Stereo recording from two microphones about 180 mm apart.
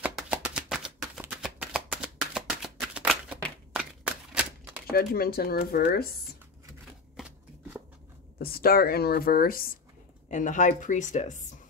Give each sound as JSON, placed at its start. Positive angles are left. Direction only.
{"t": 0.0, "sound": "a sound", "side_deg": -5}
{"t": 4.9, "sound": "speech", "side_deg": 55}
{"t": 8.4, "sound": "speech", "side_deg": 55}
{"t": 10.2, "sound": "a woman's voice", "side_deg": 45}